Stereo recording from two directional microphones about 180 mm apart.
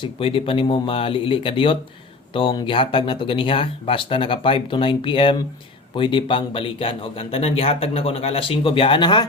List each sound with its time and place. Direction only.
0.0 s speech: 30° left (ahead or behind)